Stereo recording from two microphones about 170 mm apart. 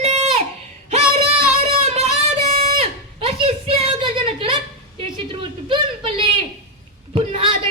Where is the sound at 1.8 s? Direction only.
40° right (ahead or behind).